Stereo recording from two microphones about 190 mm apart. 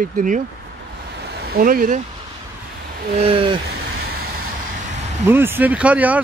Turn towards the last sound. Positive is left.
turn(degrees=-10)  # may be behind; listen again after turning